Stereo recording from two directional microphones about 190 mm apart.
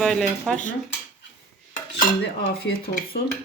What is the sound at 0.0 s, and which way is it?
Speech, centre (ahead or behind).